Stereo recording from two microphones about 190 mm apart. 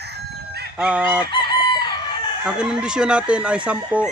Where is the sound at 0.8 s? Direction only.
5° right (ahead or behind).